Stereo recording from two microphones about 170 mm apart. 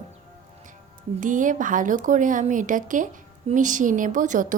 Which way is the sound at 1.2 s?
50° right (ahead or behind).